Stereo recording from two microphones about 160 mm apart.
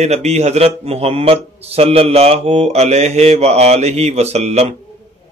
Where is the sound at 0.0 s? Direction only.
45° right (ahead or behind).